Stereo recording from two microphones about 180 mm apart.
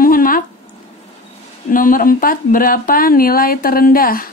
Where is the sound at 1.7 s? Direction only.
50° left (ahead or behind).